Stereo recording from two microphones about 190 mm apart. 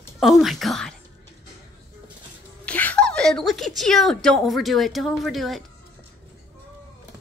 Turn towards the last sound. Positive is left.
turn(degrees=0)  # may be behind; listen again after turning